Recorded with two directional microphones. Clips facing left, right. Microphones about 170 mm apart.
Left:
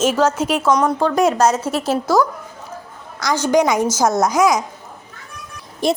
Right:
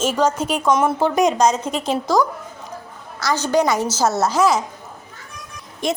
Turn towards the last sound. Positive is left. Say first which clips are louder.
# left 4 dB
turn(degrees=35)  # may be behind; listen again after turning